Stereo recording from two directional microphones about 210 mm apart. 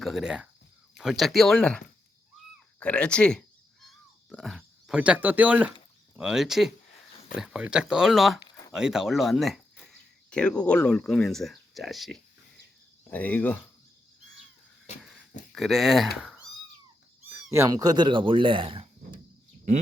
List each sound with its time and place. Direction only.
0.0 s speech: centre (ahead or behind)
2.7 s a sound: 5° left (ahead or behind)
6.1 s speech: centre (ahead or behind)
15.5 s speech: centre (ahead or behind); by 19.2 s 25° right (ahead or behind)